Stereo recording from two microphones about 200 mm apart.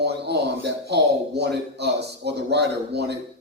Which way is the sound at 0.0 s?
55° right (ahead or behind).